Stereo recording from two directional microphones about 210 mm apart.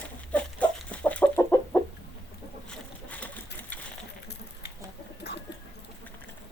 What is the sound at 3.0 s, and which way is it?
Pigeon, 5° left (ahead or behind).